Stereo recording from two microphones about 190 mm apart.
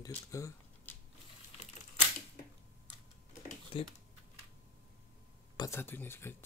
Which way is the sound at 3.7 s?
30° left (ahead or behind).